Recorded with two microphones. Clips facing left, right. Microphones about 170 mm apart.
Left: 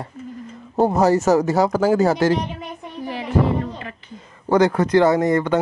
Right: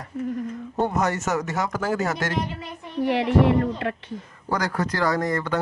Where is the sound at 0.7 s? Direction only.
35° left (ahead or behind).